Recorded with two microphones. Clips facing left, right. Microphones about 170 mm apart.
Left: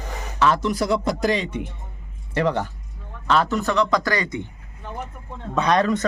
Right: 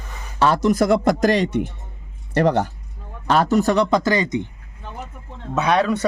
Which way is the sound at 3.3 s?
40° right (ahead or behind).